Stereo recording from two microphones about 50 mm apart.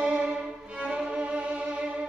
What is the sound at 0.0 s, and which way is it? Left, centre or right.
Violin, right.